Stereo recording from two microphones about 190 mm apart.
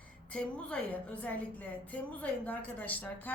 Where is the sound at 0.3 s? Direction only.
5° left (ahead or behind).